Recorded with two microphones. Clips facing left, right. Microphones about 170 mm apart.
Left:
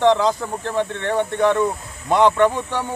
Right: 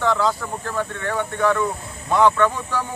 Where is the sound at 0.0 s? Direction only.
20° left (ahead or behind).